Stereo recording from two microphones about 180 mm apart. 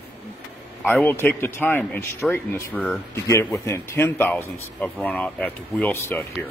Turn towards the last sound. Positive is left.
turn(degrees=10)  # may be behind; listen again after turning